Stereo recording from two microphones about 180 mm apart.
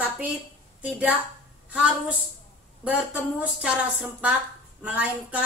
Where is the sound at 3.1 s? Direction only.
5° right (ahead or behind).